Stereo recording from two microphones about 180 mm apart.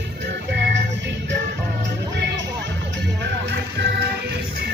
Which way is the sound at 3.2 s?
70° right (ahead or behind).